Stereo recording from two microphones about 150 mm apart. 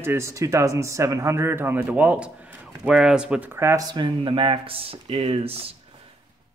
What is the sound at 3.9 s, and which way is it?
Speech, 35° right (ahead or behind).